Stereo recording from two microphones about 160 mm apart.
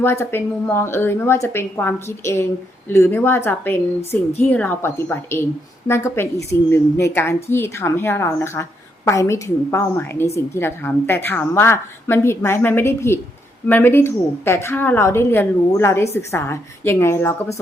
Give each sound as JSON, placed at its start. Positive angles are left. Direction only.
{"t": 0.0, "sound": "a woman's voice", "side_deg": 15}